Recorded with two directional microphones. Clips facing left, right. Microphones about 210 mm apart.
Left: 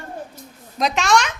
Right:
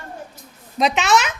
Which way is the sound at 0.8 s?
Centre (ahead or behind).